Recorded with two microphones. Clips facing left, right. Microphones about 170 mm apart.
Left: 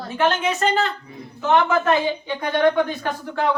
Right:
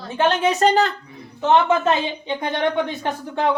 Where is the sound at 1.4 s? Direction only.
25° right (ahead or behind).